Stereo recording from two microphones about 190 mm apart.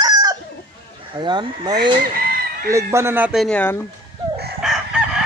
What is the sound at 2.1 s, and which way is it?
Chicken, 50° right (ahead or behind).